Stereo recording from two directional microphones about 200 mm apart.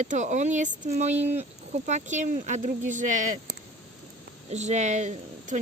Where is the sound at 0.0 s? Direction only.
35° right (ahead or behind).